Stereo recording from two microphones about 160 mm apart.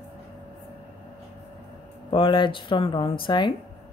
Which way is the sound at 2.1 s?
30° left (ahead or behind).